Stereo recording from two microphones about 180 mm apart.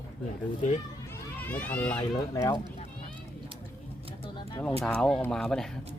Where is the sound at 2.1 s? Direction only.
20° left (ahead or behind).